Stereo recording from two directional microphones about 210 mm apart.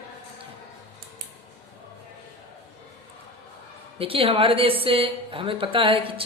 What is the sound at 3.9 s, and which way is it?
Speech, 25° right (ahead or behind).